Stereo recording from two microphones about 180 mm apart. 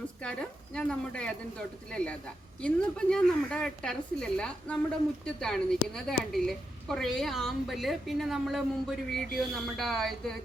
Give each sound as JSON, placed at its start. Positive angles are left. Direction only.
{"t": 0.2, "sound": "a woman's voice", "side_deg": 5}